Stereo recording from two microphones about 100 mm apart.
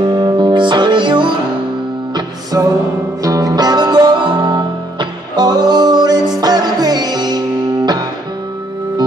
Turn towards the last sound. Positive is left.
turn(degrees=-45)  # may be behind; listen again after turning